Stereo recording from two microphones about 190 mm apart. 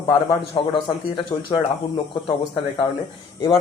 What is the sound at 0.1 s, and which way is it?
A man's voice, 25° left (ahead or behind).